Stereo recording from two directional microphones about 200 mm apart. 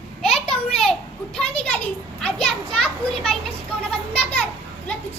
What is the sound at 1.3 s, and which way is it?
Speech, 5° left (ahead or behind).